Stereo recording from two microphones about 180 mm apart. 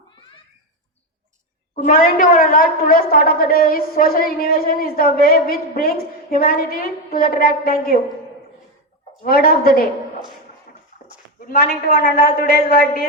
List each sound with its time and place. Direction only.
1.7 s a woman's voice: 50° left (ahead or behind)
9.2 s a woman's voice: 55° left (ahead or behind)
11.4 s a woman's voice: 55° left (ahead or behind)